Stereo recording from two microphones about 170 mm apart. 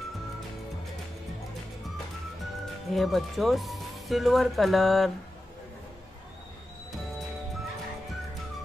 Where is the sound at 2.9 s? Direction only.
Centre (ahead or behind).